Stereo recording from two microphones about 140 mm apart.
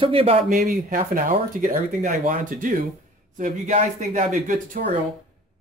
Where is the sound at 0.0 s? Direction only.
45° right (ahead or behind).